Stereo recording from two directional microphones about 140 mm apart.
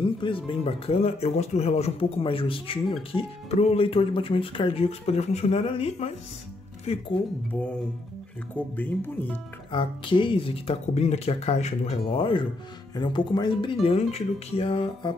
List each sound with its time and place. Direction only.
0.0 s speech: 35° left (ahead or behind)
8.5 s speech: 10° left (ahead or behind)
9.7 s speech: 35° left (ahead or behind)